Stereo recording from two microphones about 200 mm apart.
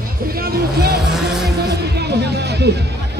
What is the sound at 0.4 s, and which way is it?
Speech, 50° right (ahead or behind).